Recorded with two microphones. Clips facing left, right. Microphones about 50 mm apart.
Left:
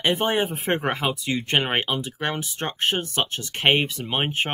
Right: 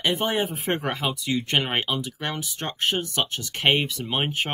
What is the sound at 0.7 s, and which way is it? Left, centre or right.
Speech, centre.